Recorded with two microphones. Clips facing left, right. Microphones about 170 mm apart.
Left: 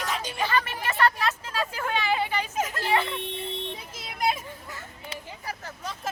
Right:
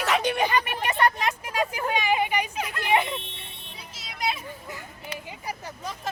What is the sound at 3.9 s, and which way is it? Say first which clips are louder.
Children playing: left 2 dB; 50° left (ahead or behind).